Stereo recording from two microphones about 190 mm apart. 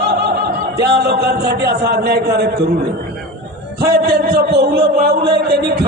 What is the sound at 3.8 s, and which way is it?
A man's voice, 55° right (ahead or behind).